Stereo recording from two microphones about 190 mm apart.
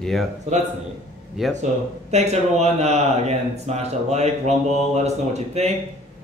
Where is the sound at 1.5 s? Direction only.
35° right (ahead or behind).